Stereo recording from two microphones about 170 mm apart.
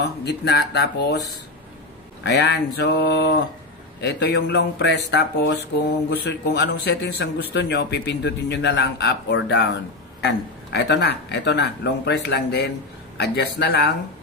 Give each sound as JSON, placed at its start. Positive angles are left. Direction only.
{"t": 0.0, "sound": "a man's voice", "side_deg": 80}
{"t": 2.2, "sound": "a man's voice", "side_deg": 85}